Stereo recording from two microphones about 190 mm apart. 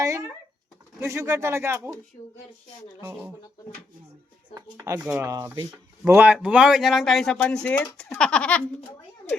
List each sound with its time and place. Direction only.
0.0 s a sound: 15° right (ahead or behind)
0.9 s speech: 15° right (ahead or behind)
3.0 s speech: 15° right (ahead or behind)
4.5 s speech: 20° right (ahead or behind)
6.1 s speech: 5° right (ahead or behind)